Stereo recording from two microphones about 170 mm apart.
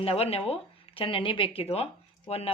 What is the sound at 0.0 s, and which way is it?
Speech, 35° left (ahead or behind).